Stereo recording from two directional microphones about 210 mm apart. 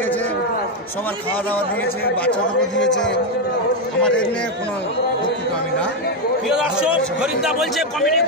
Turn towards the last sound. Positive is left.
turn(degrees=-5)  # may be behind; listen again after turning